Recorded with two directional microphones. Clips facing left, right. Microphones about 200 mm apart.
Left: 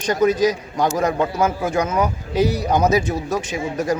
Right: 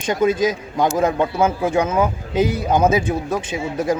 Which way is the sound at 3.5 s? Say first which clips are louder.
Right 2 dB; 25° right (ahead or behind).